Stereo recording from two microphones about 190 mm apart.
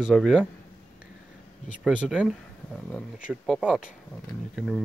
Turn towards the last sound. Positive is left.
turn(degrees=0)  # may be behind; listen again after turning